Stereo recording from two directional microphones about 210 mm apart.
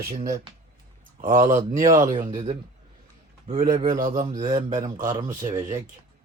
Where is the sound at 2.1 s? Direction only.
20° right (ahead or behind).